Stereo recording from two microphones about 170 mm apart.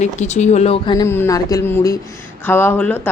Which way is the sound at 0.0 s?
45° left (ahead or behind).